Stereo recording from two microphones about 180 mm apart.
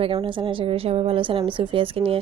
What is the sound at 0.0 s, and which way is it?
Speech, 30° right (ahead or behind).